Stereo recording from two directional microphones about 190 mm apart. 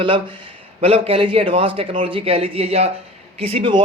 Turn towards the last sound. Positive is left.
turn(degrees=-25)  # may be behind; listen again after turning